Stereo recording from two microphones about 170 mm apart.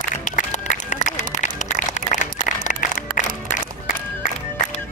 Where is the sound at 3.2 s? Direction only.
45° left (ahead or behind).